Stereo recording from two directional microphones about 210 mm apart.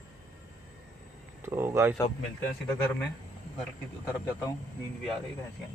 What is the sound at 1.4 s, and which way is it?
Speech, 10° right (ahead or behind).